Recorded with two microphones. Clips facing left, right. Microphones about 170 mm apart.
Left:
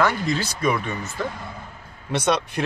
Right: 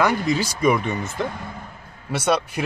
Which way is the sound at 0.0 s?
15° right (ahead or behind).